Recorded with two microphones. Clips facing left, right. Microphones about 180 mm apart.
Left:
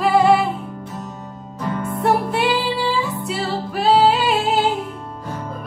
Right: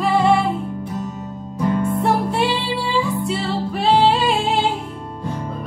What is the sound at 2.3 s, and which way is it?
Music, 30° right (ahead or behind).